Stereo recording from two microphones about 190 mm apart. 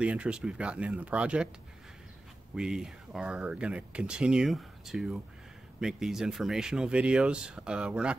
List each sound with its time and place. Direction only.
0.0 s speech: 5° right (ahead or behind)
2.5 s speech: 5° right (ahead or behind)